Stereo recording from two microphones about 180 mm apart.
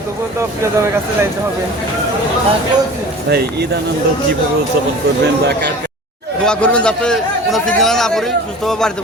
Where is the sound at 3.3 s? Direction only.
65° right (ahead or behind).